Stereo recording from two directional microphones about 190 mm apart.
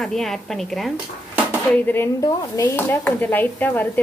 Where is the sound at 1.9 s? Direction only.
15° left (ahead or behind).